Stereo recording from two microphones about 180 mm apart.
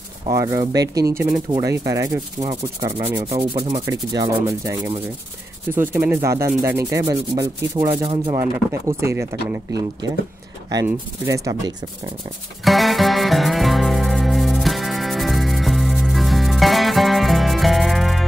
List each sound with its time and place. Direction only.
0.3 s speech: 15° right (ahead or behind)
1.5 s rub: 20° right (ahead or behind)
3.3 s sanding: 30° right (ahead or behind)
3.8 s rub: 20° right (ahead or behind)
7.9 s speech: 30° right (ahead or behind)
8.4 s rub: 15° right (ahead or behind)
12.6 s music: centre (ahead or behind)